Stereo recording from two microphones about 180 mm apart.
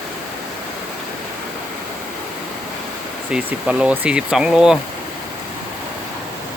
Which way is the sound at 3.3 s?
5° right (ahead or behind).